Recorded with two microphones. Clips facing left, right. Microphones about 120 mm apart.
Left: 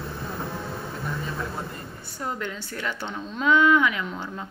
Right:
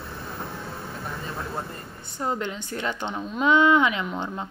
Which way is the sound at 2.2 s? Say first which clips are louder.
Right 3 dB; 25° right (ahead or behind).